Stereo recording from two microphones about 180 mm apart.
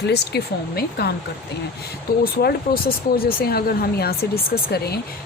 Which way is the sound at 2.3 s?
60° left (ahead or behind).